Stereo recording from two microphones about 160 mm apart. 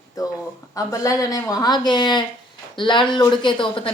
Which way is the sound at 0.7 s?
20° left (ahead or behind).